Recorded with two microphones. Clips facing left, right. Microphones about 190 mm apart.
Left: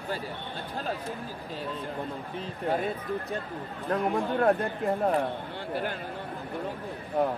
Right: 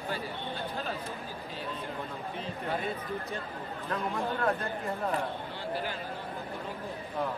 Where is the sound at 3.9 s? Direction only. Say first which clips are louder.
Left 6 dB; 55° left (ahead or behind).